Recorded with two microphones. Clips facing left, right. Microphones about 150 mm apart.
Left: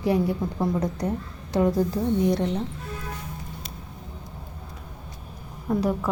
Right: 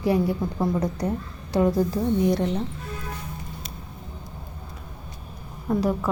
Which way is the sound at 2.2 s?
5° right (ahead or behind).